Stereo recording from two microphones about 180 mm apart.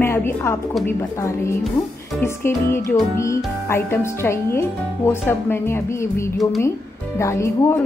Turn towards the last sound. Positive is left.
turn(degrees=15)  # may be behind; listen again after turning